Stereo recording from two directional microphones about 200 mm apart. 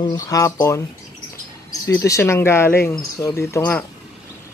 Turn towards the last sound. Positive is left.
turn(degrees=10)  # may be behind; listen again after turning